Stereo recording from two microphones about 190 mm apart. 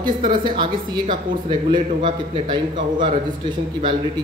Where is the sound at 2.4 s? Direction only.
25° right (ahead or behind).